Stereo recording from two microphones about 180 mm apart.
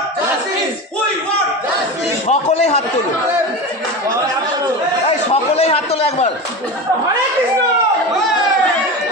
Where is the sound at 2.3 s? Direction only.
35° left (ahead or behind).